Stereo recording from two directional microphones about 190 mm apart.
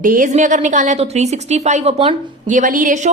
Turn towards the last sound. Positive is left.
turn(degrees=-45)  # may be behind; listen again after turning